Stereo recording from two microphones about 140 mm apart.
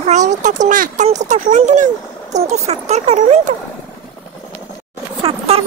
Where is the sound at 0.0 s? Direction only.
60° right (ahead or behind).